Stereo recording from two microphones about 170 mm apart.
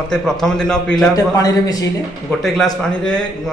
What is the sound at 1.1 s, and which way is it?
Speech, 20° left (ahead or behind).